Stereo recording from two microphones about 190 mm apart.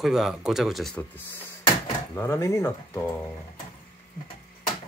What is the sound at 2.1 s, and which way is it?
Speech, 15° left (ahead or behind).